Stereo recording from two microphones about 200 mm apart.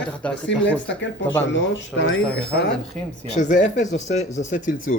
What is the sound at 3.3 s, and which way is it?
Speech, 40° left (ahead or behind).